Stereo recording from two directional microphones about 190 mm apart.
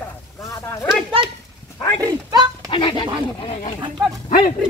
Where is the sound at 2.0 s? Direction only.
20° right (ahead or behind).